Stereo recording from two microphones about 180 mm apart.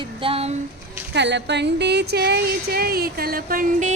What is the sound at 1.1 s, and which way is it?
Speech, 75° right (ahead or behind).